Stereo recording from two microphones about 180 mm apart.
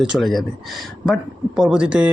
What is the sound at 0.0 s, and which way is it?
Speech, centre (ahead or behind).